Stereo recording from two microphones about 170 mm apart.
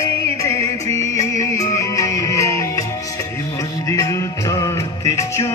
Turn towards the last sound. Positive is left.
turn(degrees=15)  # may be behind; listen again after turning